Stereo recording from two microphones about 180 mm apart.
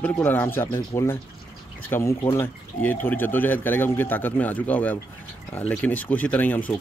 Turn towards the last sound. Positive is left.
turn(degrees=10)  # may be behind; listen again after turning